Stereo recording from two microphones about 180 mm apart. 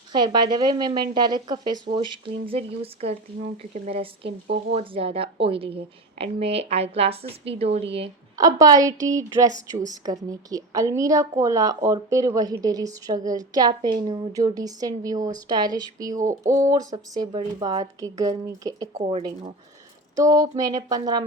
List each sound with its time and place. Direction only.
0.1 s a woman's voice: 25° right (ahead or behind)
4.3 s speech: 65° right (ahead or behind)
4.7 s speech: 30° right (ahead or behind)
8.4 s a woman's voice: 20° right (ahead or behind)
16.3 s a sound: 15° right (ahead or behind)
16.7 s a woman's voice: 20° right (ahead or behind)
20.1 s a woman's voice: 20° right (ahead or behind)